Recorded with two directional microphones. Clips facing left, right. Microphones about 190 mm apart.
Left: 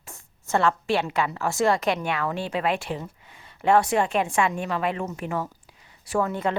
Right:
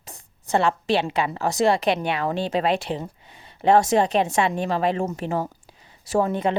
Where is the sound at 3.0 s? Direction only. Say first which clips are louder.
Right 3 dB; 25° right (ahead or behind).